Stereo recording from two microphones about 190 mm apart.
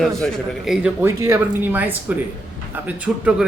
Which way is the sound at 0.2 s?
Centre (ahead or behind).